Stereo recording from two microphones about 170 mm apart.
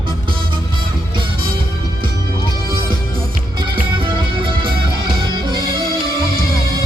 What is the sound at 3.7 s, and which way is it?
Music, 30° right (ahead or behind).